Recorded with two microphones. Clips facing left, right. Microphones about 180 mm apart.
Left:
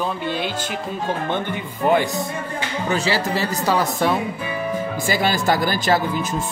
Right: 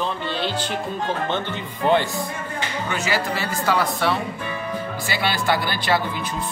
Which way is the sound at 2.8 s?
35° left (ahead or behind).